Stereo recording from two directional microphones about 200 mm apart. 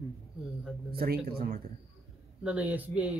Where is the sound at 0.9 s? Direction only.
50° right (ahead or behind).